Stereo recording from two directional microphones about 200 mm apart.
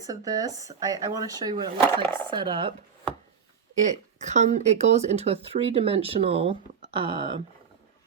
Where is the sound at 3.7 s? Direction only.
35° right (ahead or behind).